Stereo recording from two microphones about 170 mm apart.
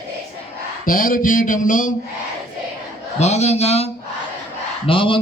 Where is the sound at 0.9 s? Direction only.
55° left (ahead or behind).